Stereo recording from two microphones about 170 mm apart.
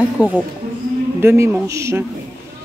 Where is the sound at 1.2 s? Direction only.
15° right (ahead or behind).